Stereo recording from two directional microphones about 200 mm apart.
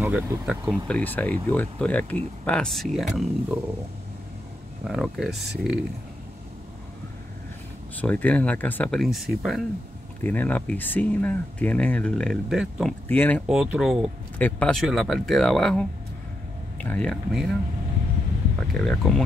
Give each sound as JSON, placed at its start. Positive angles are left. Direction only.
{"t": 0.0, "sound": "speech", "side_deg": -5}
{"t": 0.7, "sound": "speech", "side_deg": 5}
{"t": 4.8, "sound": "speech", "side_deg": 0}
{"t": 7.9, "sound": "speech", "side_deg": 10}
{"t": 13.1, "sound": "speech", "side_deg": 10}
{"t": 13.5, "sound": "speech", "side_deg": -5}
{"t": 18.7, "sound": "speech", "side_deg": 5}